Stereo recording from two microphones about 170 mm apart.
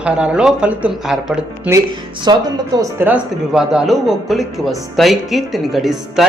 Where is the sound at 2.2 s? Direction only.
25° right (ahead or behind).